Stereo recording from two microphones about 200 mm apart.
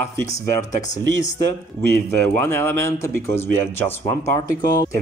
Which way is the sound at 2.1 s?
10° left (ahead or behind).